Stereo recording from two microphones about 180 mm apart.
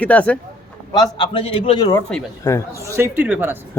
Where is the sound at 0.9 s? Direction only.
25° left (ahead or behind).